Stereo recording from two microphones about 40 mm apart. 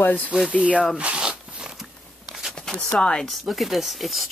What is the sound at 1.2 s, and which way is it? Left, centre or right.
Zipper, right.